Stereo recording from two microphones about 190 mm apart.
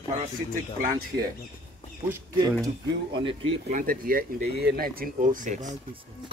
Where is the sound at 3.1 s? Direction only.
30° right (ahead or behind).